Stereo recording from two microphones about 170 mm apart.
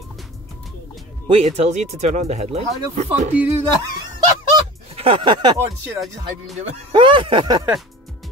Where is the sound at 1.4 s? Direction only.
45° right (ahead or behind).